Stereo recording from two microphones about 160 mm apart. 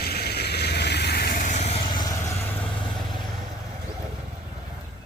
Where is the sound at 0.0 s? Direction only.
80° left; by 2.3 s 25° left (ahead or behind).